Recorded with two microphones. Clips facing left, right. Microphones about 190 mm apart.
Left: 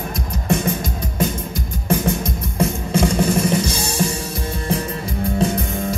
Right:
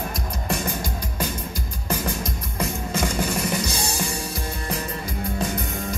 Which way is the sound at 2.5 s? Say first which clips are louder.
Left 7 dB; 30° left (ahead or behind).